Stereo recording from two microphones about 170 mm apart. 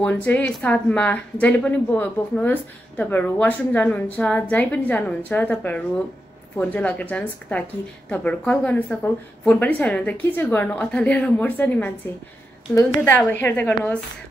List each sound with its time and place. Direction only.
0.0 s speech: 10° left (ahead or behind)